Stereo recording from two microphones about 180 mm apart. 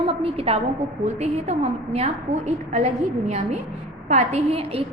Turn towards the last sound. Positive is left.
turn(degrees=-35)  # may be behind; listen again after turning